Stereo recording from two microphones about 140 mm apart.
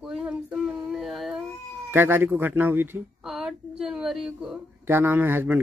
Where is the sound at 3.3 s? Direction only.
5° right (ahead or behind).